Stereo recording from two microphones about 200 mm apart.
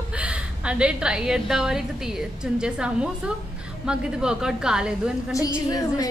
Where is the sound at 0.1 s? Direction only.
5° right (ahead or behind).